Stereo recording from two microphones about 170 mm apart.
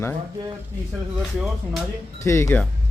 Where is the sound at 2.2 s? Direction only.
15° left (ahead or behind).